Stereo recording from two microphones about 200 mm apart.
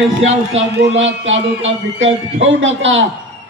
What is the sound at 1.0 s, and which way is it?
A man's voice, 65° right (ahead or behind).